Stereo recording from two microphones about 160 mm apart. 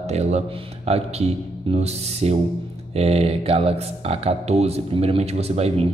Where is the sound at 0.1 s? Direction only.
40° right (ahead or behind).